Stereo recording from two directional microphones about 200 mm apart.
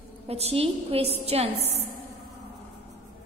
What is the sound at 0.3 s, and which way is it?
A woman's voice, 30° right (ahead or behind).